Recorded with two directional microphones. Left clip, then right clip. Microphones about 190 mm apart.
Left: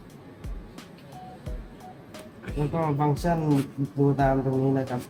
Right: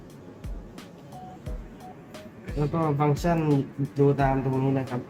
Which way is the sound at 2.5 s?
Centre (ahead or behind).